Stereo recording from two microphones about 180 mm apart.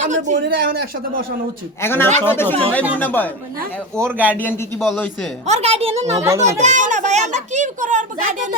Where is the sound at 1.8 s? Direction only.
10° left (ahead or behind).